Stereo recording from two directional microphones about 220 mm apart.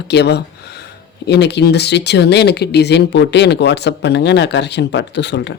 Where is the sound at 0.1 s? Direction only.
50° left (ahead or behind).